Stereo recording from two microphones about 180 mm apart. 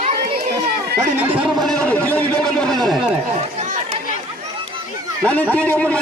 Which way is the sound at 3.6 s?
40° right (ahead or behind).